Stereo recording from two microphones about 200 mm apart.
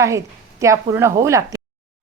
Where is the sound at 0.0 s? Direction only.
15° right (ahead or behind).